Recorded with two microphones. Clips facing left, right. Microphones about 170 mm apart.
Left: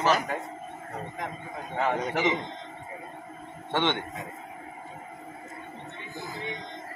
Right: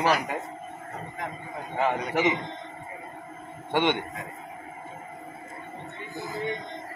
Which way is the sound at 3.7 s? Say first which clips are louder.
Right 3 dB; 15° right (ahead or behind).